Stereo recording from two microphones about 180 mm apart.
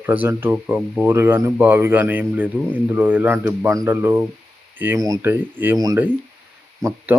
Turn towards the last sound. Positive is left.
turn(degrees=-15)  # may be behind; listen again after turning